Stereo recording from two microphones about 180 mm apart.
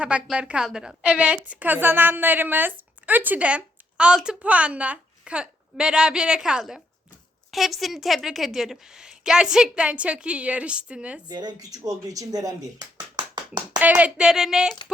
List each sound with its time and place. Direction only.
0.0 s a woman's voice: 5° right (ahead or behind)
11.3 s speech: 20° right (ahead or behind)
13.7 s a woman's voice: 10° right (ahead or behind)